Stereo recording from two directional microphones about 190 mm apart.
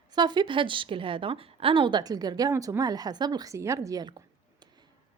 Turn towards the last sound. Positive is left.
turn(degrees=-20)  # may be behind; listen again after turning